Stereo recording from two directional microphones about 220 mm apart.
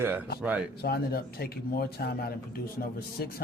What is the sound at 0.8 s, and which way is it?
Speech, 45° left (ahead or behind).